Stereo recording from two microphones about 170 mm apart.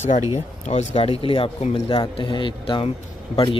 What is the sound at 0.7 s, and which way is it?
Speech, 40° left (ahead or behind).